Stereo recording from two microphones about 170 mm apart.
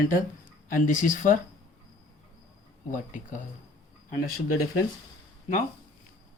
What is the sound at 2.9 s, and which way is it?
Speech, 50° left (ahead or behind).